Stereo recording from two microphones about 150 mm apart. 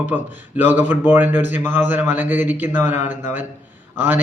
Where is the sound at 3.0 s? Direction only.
55° left (ahead or behind).